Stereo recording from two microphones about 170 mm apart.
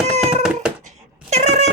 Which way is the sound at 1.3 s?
40° right (ahead or behind).